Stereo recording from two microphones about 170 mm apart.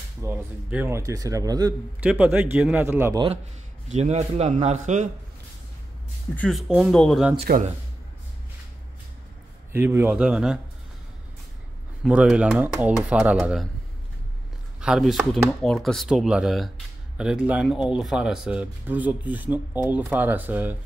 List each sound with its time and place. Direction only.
0.2 s speech: 10° right (ahead or behind)
2.0 s speech: 10° right (ahead or behind)
3.9 s a man's voice: 40° right (ahead or behind)
6.3 s speech: 5° left (ahead or behind)
7.4 s a man's voice: 55° right (ahead or behind)
9.7 s speech: 15° right (ahead or behind)
12.0 s speech: 5° right (ahead or behind)
14.8 s speech: centre (ahead or behind)